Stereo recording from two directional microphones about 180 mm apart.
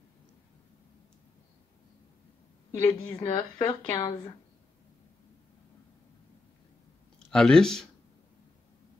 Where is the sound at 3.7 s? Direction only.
15° left (ahead or behind).